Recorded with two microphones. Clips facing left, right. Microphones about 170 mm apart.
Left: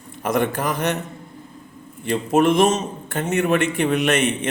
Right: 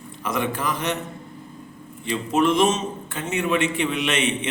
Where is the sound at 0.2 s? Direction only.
45° left (ahead or behind).